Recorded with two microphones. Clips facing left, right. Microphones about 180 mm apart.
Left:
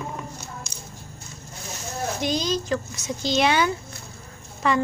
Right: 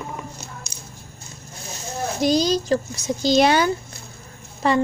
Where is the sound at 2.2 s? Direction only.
35° right (ahead or behind).